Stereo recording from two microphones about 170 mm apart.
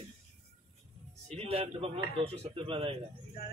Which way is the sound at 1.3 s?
35° right (ahead or behind).